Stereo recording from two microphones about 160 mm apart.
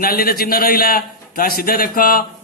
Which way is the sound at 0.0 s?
65° left (ahead or behind).